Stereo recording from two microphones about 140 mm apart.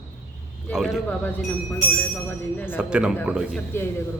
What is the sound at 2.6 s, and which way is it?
Speech, 5° right (ahead or behind).